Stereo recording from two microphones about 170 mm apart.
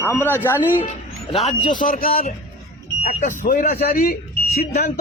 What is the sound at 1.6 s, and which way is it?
Speech, 50° left (ahead or behind).